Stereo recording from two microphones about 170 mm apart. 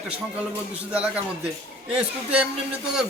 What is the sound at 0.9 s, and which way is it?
Speech, 5° right (ahead or behind).